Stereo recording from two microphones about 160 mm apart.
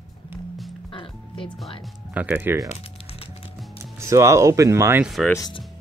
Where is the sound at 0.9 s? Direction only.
30° left (ahead or behind).